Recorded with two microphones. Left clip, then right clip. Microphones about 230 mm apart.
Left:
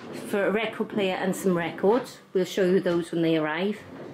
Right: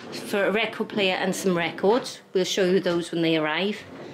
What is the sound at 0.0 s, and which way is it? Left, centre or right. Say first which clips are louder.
Speech: right 2 dB; centre.